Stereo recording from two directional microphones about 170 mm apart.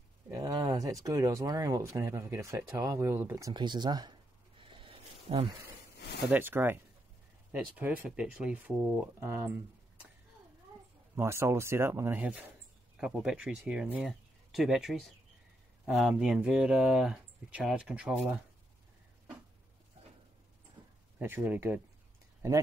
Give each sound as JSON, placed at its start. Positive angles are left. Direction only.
{"t": 0.3, "sound": "a sound", "side_deg": -20}
{"t": 1.0, "sound": "speech", "side_deg": -20}
{"t": 4.6, "sound": "a sound", "side_deg": -30}
{"t": 6.3, "sound": "speech", "side_deg": -10}
{"t": 11.1, "sound": "speech", "side_deg": -15}
{"t": 21.2, "sound": "speech", "side_deg": -10}